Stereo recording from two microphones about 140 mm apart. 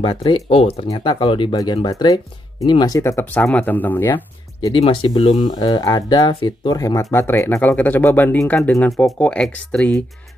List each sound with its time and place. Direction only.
0.0 s speech: 40° left (ahead or behind)
3.0 s speech: 15° left (ahead or behind)
4.7 s speech: 40° left (ahead or behind); by 8.8 s 20° left (ahead or behind)
8.8 s speech: 5° left (ahead or behind)